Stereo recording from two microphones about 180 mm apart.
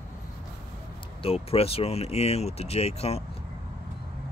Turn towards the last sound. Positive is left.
turn(degrees=35)  # may be behind; listen again after turning